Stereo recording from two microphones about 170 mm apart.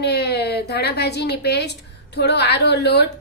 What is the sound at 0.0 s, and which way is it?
A woman's voice, 75° left (ahead or behind).